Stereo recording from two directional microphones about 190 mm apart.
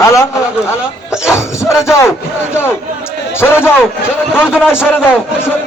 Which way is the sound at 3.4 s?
10° left (ahead or behind).